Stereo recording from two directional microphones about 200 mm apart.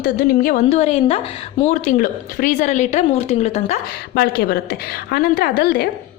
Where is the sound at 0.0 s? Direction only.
40° left (ahead or behind).